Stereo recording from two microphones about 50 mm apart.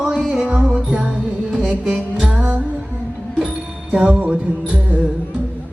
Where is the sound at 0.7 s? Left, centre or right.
Right.